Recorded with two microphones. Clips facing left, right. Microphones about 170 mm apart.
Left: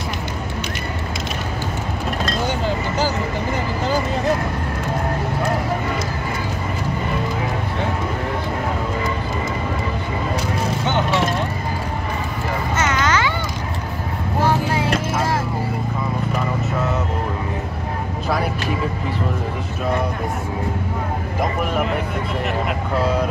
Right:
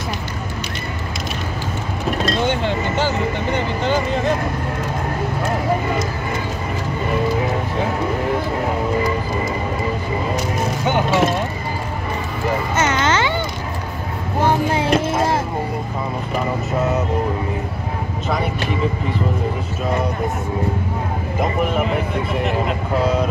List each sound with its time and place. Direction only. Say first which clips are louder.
3.5 s speech: right 1 dB; centre (ahead or behind)
10.9 s speech: right 3 dB; 10° right (ahead or behind)
12.7 s a sound: even; 30° right (ahead or behind)
14.4 s vehicle: right 2 dB; 25° right (ahead or behind)